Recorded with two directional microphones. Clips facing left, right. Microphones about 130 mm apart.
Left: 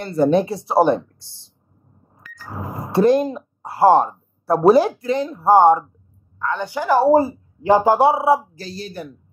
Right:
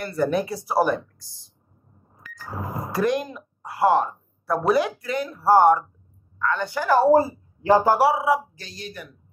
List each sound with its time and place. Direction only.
0.0 s a woman's voice: 25° left (ahead or behind)
2.9 s a woman's voice: 30° left (ahead or behind)